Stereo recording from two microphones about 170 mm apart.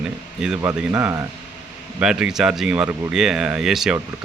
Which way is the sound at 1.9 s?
5° right (ahead or behind).